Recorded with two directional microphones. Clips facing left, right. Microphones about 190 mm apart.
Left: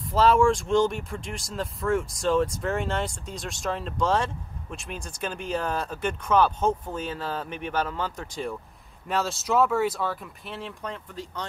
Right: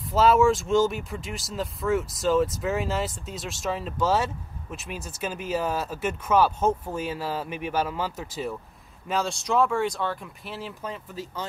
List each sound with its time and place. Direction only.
0.0 s speech: 5° right (ahead or behind)